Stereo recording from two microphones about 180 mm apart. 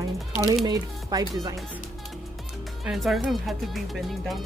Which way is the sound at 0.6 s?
20° right (ahead or behind).